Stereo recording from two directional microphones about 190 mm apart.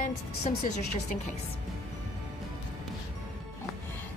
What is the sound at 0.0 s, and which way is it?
A woman's voice, 40° left (ahead or behind).